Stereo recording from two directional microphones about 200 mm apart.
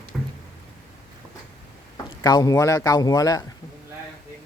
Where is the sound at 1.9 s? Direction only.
20° left (ahead or behind).